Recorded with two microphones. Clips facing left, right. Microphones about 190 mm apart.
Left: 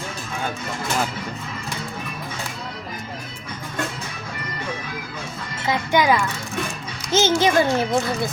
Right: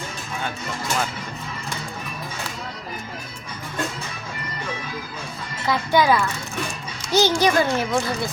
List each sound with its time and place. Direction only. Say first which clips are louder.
5.6 s a child's voice: even; 20° left (ahead or behind)